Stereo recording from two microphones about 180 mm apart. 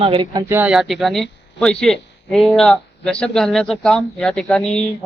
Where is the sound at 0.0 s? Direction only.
30° right (ahead or behind).